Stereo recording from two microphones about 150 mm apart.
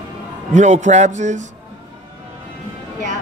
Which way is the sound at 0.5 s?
55° right (ahead or behind).